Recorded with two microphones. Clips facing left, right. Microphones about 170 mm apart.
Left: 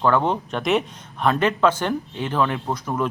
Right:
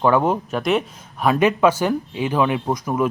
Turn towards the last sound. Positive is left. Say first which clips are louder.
# right 4 dB
turn(degrees=-10)  # may be behind; listen again after turning